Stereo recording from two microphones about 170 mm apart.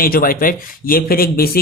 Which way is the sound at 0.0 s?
55° left (ahead or behind).